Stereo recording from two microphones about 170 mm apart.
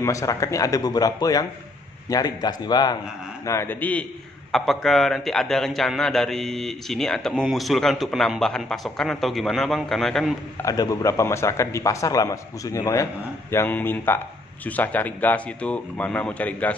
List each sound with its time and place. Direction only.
0.0 s a man's voice: 20° left (ahead or behind)
3.4 s a man's voice: 15° left (ahead or behind)
10.6 s a man's voice: 20° left (ahead or behind)